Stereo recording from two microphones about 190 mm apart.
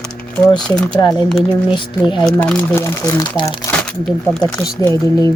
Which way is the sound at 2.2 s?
5° left (ahead or behind).